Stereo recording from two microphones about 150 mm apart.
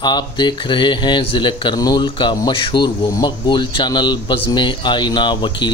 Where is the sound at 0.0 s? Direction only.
30° left (ahead or behind).